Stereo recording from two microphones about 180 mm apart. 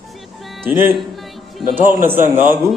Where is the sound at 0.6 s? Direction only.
10° right (ahead or behind).